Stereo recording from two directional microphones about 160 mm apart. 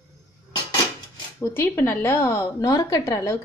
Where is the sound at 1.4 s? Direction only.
15° left (ahead or behind).